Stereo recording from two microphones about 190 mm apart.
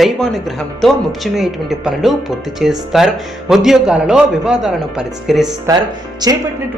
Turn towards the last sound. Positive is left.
turn(degrees=-20)  # may be behind; listen again after turning